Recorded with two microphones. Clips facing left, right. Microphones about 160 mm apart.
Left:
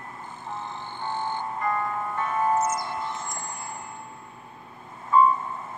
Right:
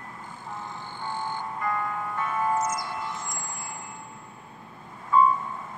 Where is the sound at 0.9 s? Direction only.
20° left (ahead or behind).